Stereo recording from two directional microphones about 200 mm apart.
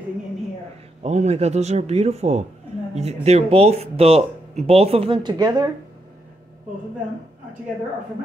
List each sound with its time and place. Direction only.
1.0 s speech: 35° right (ahead or behind)